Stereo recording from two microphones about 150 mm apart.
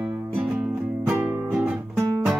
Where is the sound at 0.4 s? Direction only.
Centre (ahead or behind).